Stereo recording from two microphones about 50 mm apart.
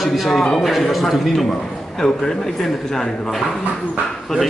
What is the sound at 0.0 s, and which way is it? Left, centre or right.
A man's voice, centre.